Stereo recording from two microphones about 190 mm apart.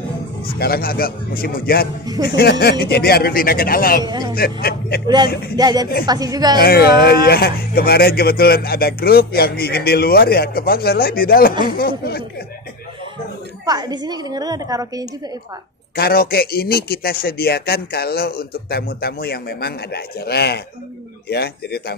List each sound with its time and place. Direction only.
0.6 s speech: 55° left (ahead or behind)
4.0 s a woman's voice: 20° right (ahead or behind)
4.4 s speech: 55° left (ahead or behind)
5.0 s a woman's voice: 25° right (ahead or behind)
6.6 s speech: 55° left (ahead or behind)
13.7 s a woman's voice: 20° right (ahead or behind)
16.0 s speech: 50° left (ahead or behind)